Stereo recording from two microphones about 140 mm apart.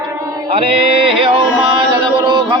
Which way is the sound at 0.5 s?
40° right (ahead or behind).